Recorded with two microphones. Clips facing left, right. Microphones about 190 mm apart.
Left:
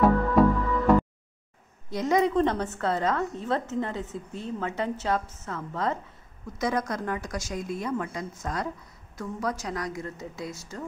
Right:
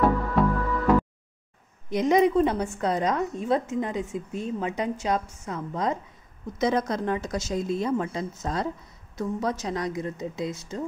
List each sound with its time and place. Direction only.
0.0 s music: centre (ahead or behind)
1.9 s a woman's voice: 20° right (ahead or behind)